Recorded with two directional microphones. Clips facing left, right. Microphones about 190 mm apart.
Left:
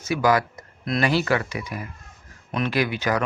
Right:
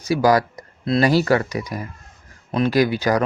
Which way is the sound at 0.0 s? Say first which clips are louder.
Right 4 dB; 35° right (ahead or behind).